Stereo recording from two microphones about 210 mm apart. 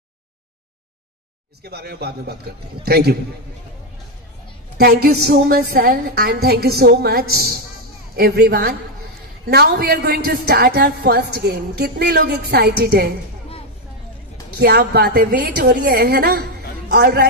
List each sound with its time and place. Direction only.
1.6 s a woman's voice: 50° right (ahead or behind)
4.7 s a woman's voice: 50° right (ahead or behind)
14.6 s a woman's voice: 50° right (ahead or behind)